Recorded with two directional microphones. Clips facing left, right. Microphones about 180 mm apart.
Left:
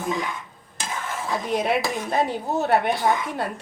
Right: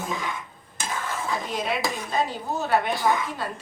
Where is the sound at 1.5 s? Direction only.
60° left (ahead or behind).